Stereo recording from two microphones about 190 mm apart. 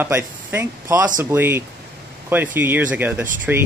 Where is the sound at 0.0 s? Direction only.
10° right (ahead or behind).